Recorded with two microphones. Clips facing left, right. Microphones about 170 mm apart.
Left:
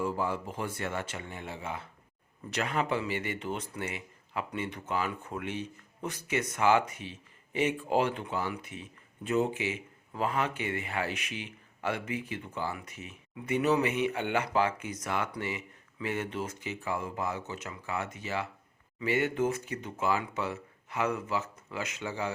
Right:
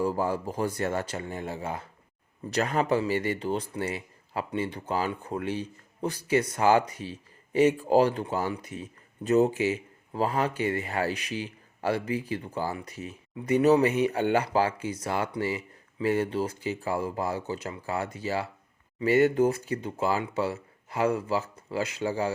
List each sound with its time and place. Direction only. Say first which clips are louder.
0.0 s speech: right 4 dB; 40° right (ahead or behind)